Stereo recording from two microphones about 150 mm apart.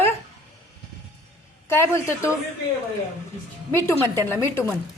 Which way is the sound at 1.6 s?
15° left (ahead or behind).